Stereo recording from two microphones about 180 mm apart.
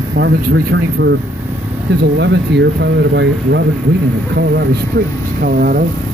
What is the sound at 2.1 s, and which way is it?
Speech, 75° right (ahead or behind).